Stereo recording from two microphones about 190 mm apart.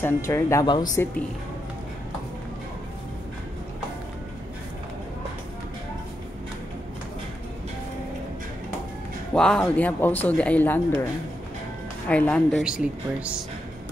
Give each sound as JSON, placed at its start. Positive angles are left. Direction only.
{"t": 0.0, "sound": "speech", "side_deg": 15}
{"t": 9.3, "sound": "speech", "side_deg": 5}
{"t": 12.1, "sound": "speech", "side_deg": 5}
{"t": 12.6, "sound": "speech", "side_deg": -5}